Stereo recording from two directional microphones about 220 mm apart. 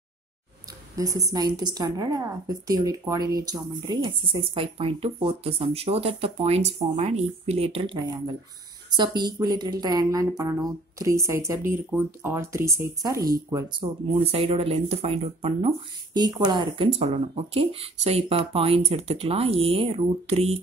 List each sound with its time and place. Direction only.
0.9 s a woman's voice: 15° right (ahead or behind)